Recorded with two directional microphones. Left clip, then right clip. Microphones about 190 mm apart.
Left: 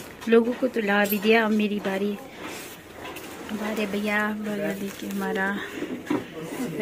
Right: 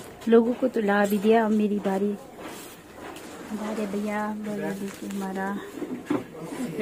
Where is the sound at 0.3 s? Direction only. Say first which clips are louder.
Even; 25° right (ahead or behind).